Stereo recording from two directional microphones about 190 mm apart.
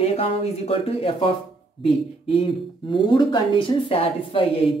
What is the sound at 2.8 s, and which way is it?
A woman's voice, 25° left (ahead or behind).